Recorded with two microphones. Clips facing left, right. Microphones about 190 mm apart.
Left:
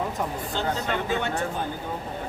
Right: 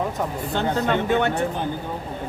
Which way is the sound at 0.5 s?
60° right (ahead or behind).